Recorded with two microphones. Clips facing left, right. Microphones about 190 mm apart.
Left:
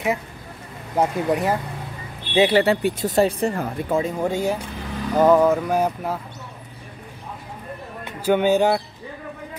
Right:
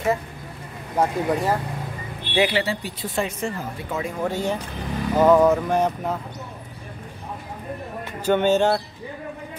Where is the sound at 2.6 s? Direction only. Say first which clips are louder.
Left 9 dB; 60° left (ahead or behind).